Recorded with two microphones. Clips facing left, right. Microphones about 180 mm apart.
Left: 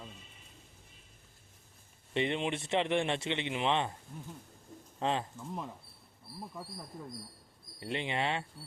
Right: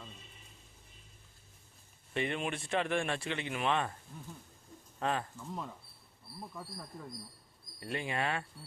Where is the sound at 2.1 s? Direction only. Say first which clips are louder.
Left 3 dB; 25° left (ahead or behind).